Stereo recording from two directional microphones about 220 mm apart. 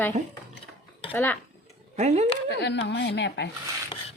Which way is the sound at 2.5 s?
50° left (ahead or behind).